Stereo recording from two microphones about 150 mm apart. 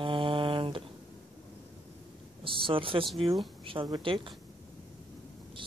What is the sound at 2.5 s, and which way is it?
Speech, 35° right (ahead or behind).